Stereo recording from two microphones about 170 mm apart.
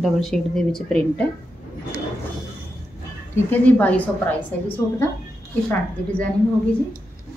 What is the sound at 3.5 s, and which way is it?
A woman's voice, 10° left (ahead or behind).